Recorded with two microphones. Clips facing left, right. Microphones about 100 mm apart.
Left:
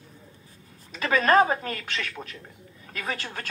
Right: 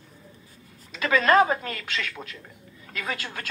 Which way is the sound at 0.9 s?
45° left (ahead or behind).